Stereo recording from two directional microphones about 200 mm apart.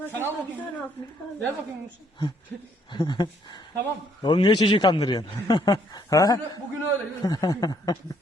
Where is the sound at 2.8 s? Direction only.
20° left (ahead or behind).